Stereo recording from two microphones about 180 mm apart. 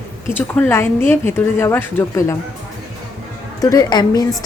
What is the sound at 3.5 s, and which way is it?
Speech, 20° left (ahead or behind).